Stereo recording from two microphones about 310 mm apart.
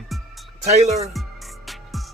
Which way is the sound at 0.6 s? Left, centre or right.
Right.